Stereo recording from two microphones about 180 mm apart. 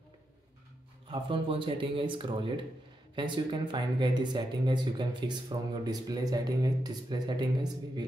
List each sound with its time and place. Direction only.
1.0 s speech: 30° right (ahead or behind)